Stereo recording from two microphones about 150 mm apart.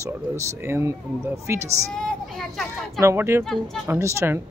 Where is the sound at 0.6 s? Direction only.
15° right (ahead or behind).